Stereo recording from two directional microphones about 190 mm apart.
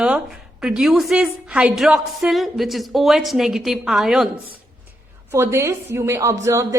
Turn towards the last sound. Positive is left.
turn(degrees=-15)  # may be behind; listen again after turning